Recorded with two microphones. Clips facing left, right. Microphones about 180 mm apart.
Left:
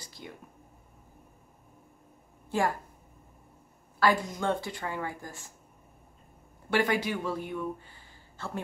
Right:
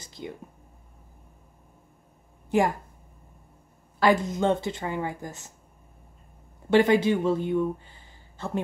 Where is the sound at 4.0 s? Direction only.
20° right (ahead or behind).